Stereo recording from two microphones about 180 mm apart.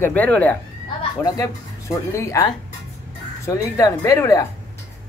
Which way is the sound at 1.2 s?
20° left (ahead or behind).